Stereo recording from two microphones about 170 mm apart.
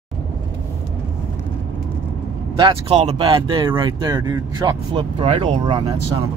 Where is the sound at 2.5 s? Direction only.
30° right (ahead or behind).